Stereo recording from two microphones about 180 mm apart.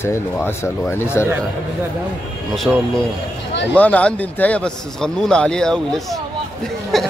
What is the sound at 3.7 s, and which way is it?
A man's voice, 5° left (ahead or behind).